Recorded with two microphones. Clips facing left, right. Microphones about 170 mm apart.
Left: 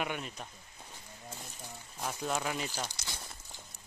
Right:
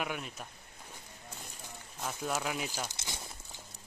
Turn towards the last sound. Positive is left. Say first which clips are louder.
# right 1 dB
turn(degrees=-20)  # may be behind; listen again after turning